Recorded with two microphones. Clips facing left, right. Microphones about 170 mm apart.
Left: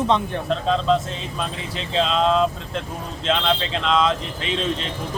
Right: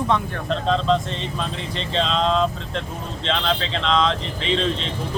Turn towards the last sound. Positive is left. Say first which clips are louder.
# right 2 dB
turn(degrees=5)  # may be behind; listen again after turning